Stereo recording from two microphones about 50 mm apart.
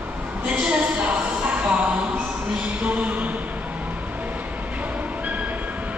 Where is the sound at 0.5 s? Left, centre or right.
Right.